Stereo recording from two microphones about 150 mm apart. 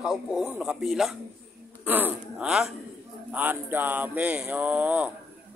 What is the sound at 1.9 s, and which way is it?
A man's voice, 10° right (ahead or behind).